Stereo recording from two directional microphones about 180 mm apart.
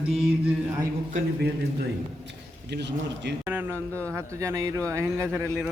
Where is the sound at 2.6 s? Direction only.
70° right (ahead or behind).